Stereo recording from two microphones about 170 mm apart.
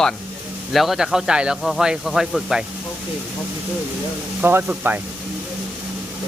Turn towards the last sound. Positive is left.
turn(degrees=-10)  # may be behind; listen again after turning